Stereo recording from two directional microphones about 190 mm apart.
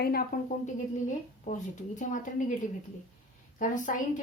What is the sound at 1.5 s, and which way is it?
Speech, 40° left (ahead or behind).